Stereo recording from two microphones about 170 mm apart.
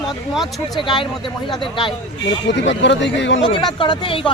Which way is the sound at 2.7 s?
90° left.